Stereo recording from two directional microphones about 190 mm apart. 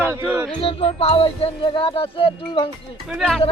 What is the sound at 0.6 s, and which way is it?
Music, 30° left (ahead or behind).